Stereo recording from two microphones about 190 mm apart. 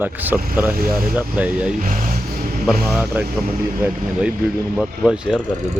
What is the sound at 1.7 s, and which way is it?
Vehicle, 40° right (ahead or behind).